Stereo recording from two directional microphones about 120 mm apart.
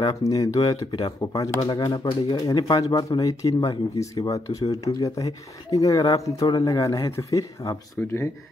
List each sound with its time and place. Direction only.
0.2 s speech: 30° left (ahead or behind)